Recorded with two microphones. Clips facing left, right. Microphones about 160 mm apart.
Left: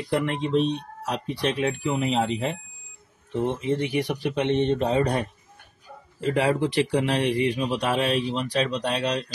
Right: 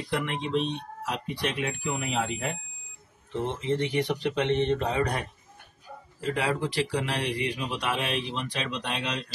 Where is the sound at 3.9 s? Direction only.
15° left (ahead or behind).